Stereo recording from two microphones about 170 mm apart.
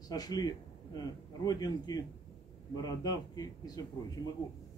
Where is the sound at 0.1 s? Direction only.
20° left (ahead or behind).